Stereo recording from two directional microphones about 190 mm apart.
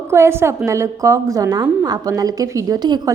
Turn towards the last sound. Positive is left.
turn(degrees=-20)  # may be behind; listen again after turning